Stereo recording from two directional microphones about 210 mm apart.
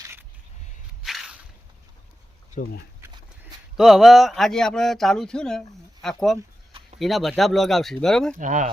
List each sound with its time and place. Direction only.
0.0 s a sound: 10° right (ahead or behind)
1.0 s whip: centre (ahead or behind)
3.8 s speech: centre (ahead or behind)
8.4 s speech: 35° right (ahead or behind)